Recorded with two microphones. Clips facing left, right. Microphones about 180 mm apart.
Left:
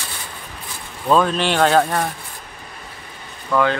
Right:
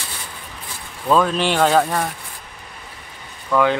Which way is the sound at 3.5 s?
10° right (ahead or behind).